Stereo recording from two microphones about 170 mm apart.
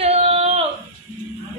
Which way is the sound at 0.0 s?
40° right (ahead or behind).